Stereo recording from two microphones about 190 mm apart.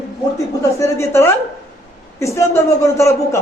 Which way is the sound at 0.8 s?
15° left (ahead or behind).